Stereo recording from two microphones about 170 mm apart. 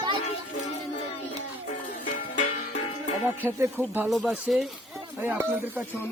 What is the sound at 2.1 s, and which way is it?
Music, 50° left (ahead or behind).